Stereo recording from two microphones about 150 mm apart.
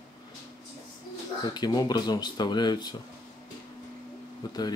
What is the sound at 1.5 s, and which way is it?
Speech, 25° left (ahead or behind).